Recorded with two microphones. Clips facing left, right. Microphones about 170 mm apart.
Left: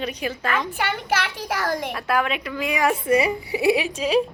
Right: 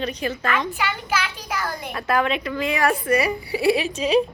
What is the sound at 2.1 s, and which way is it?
A woman's voice, 5° left (ahead or behind).